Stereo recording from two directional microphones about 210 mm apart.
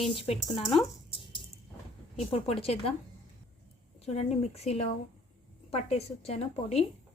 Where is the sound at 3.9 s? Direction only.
30° left (ahead or behind).